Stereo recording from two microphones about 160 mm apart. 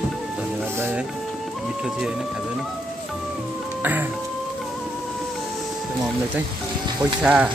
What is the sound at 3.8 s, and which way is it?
Speech, 10° right (ahead or behind).